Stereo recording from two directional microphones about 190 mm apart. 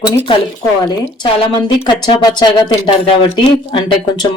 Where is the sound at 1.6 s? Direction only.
20° left (ahead or behind).